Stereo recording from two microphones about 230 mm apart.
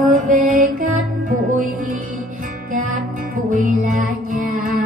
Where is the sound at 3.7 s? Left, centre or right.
Right.